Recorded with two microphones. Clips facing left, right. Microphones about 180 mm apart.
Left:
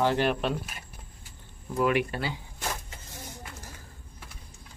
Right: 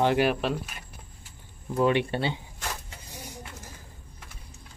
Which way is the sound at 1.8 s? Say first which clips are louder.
Right 2 dB; 30° right (ahead or behind).